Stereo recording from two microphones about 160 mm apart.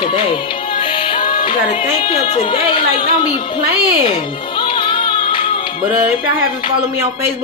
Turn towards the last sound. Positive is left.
turn(degrees=35)  # may be behind; listen again after turning